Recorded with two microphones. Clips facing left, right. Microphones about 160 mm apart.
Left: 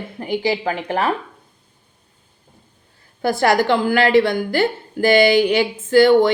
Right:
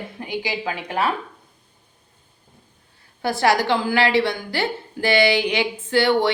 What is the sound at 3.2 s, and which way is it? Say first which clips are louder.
A woman's voice: left 3 dB; 50° left (ahead or behind).